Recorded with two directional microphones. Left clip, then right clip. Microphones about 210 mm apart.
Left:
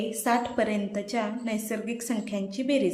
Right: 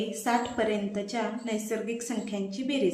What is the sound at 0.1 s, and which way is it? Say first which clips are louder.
A woman's voice: left 3 dB; 40° left (ahead or behind).